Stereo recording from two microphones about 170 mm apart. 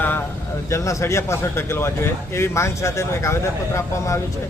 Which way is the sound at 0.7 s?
15° left (ahead or behind).